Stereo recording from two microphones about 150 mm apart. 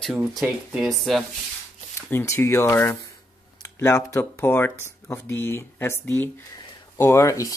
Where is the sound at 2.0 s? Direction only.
15° left (ahead or behind).